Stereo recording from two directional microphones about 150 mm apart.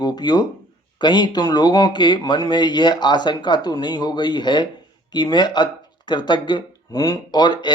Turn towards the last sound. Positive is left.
turn(degrees=30)  # may be behind; listen again after turning